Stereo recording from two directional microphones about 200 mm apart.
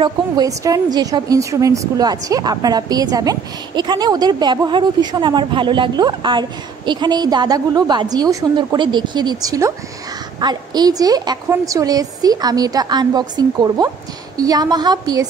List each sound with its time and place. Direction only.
0.0 s a woman's voice: 20° right (ahead or behind)